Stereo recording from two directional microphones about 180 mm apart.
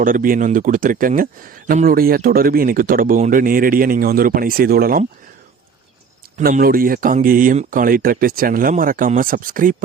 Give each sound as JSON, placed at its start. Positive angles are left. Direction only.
{"t": 0.0, "sound": "speech", "side_deg": -50}
{"t": 6.3, "sound": "speech", "side_deg": -50}